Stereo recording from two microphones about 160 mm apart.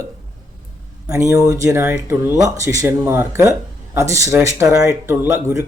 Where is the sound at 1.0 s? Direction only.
20° right (ahead or behind).